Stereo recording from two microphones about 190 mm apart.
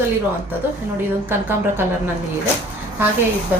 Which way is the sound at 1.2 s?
10° right (ahead or behind).